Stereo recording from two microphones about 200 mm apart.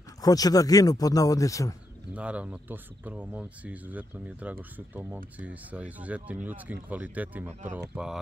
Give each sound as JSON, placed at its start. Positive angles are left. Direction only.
{"t": 0.2, "sound": "speech", "side_deg": 20}
{"t": 2.1, "sound": "speech", "side_deg": -5}